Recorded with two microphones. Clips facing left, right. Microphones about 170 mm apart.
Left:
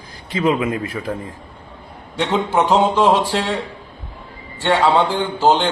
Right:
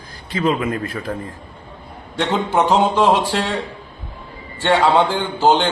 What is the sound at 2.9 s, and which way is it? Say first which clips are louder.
Speech: even; centre (ahead or behind).